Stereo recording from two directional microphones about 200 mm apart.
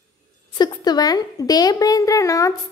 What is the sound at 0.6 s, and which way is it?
A woman's voice, 20° left (ahead or behind).